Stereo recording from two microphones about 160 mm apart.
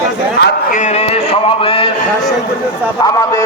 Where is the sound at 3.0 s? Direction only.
20° left (ahead or behind).